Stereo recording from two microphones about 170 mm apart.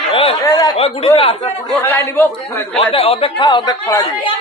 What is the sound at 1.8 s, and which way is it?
A man's voice, 10° left (ahead or behind).